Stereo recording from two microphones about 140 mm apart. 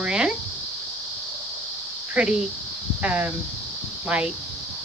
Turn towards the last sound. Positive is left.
turn(degrees=-10)  # may be behind; listen again after turning